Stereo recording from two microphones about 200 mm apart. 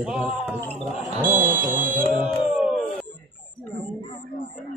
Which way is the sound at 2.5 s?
5° right (ahead or behind).